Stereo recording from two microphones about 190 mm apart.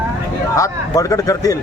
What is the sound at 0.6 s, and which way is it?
Speech, 15° left (ahead or behind).